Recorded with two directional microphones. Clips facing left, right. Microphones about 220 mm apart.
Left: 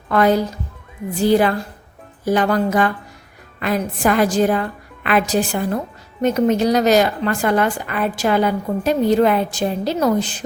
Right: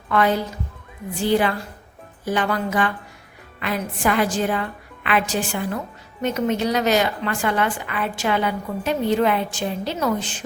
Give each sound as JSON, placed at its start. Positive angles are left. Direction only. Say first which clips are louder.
{"t": 0.1, "sound": "a woman's voice", "louder": "left 4 dB", "side_deg": 40}